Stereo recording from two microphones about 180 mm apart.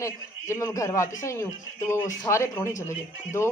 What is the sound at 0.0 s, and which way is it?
A man's voice, 15° left (ahead or behind).